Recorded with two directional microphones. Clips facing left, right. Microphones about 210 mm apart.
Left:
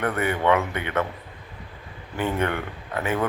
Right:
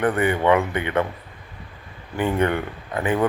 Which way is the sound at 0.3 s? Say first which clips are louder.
Right 1 dB; 10° right (ahead or behind).